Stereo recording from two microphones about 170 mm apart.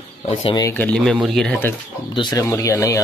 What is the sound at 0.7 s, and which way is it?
Speech, 10° left (ahead or behind).